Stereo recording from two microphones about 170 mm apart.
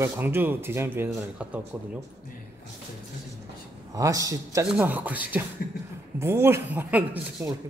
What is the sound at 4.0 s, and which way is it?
Speech, 20° right (ahead or behind).